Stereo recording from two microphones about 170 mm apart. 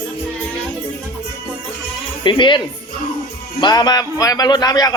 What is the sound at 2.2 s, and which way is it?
Speech, 30° left (ahead or behind).